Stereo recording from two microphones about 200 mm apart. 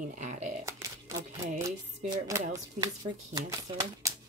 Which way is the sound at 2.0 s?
15° right (ahead or behind).